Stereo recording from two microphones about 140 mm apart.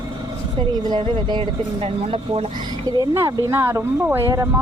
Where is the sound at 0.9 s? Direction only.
35° right (ahead or behind).